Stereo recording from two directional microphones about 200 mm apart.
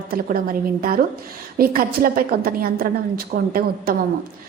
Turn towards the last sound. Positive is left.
turn(degrees=-45)  # may be behind; listen again after turning